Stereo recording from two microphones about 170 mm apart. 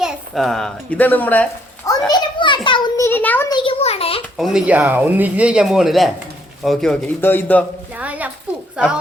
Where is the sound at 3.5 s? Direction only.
30° left (ahead or behind).